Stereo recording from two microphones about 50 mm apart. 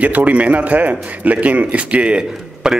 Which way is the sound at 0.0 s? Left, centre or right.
Right.